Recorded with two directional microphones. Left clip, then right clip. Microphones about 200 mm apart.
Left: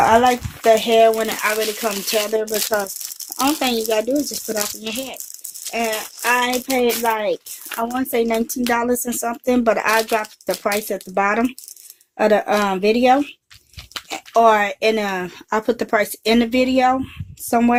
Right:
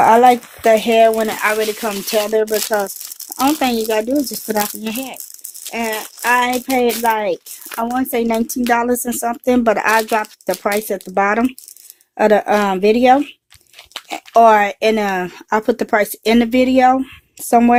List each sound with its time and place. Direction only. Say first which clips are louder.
0.0 s speech: right 4 dB; 55° right (ahead or behind)
3.4 s speech: right 3 dB; 50° right (ahead or behind)